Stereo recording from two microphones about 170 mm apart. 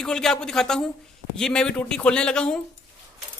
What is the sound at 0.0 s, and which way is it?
A woman's voice, 5° left (ahead or behind).